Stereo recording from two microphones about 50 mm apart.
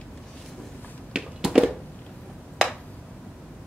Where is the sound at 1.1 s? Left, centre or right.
Centre.